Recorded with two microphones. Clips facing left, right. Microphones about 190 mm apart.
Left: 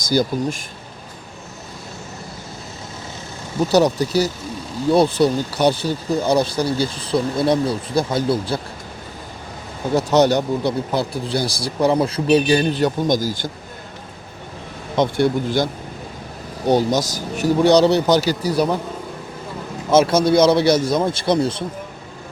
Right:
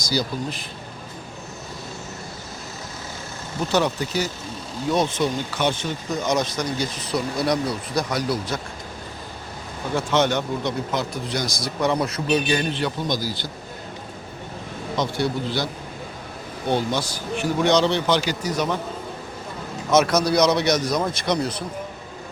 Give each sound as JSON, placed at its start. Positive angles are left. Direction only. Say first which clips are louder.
{"t": 0.0, "sound": "speech", "louder": "left 6 dB", "side_deg": 50}
{"t": 3.7, "sound": "speech", "louder": "left 6 dB", "side_deg": 35}
{"t": 9.9, "sound": "speech", "louder": "left 6 dB", "side_deg": 40}
{"t": 14.9, "sound": "speech", "louder": "left 7 dB", "side_deg": 50}
{"t": 19.9, "sound": "a man's voice", "louder": "left 4 dB", "side_deg": 30}